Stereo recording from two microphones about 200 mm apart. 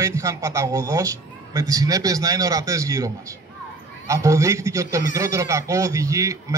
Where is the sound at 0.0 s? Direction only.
15° right (ahead or behind).